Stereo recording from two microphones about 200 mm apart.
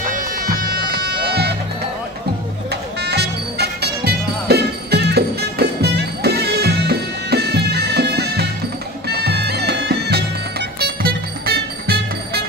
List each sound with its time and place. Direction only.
0.1 s music: 45° right (ahead or behind)
2.7 s music: 55° right (ahead or behind)